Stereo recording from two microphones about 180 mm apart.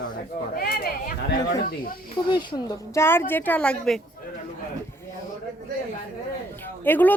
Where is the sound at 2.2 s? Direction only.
25° left (ahead or behind); by 4.0 s 5° left (ahead or behind).